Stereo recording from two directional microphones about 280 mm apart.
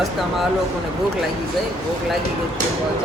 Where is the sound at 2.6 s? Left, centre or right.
Right.